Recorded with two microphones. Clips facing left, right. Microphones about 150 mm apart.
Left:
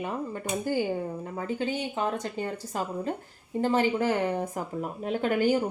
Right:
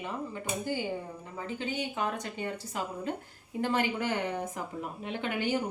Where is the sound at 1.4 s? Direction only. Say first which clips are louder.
Left 4 dB; 40° left (ahead or behind).